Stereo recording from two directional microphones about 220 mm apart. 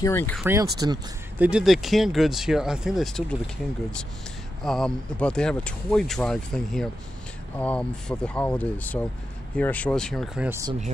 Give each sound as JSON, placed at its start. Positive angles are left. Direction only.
{"t": 0.0, "sound": "speech", "side_deg": 10}
{"t": 0.4, "sound": "speech", "side_deg": -15}
{"t": 1.4, "sound": "speech", "side_deg": -5}
{"t": 4.6, "sound": "speech", "side_deg": 5}